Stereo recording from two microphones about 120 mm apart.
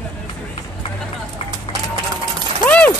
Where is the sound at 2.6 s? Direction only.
10° left (ahead or behind).